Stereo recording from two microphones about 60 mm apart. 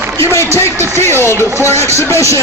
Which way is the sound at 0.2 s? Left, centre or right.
Left.